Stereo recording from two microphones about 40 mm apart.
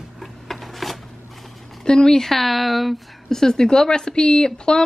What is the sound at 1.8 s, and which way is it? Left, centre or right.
A woman's voice, centre.